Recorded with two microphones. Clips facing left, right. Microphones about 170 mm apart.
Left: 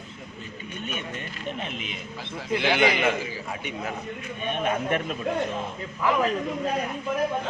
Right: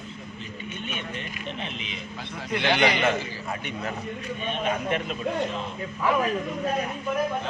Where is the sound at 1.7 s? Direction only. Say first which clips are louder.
Left 1 dB; 50° left (ahead or behind).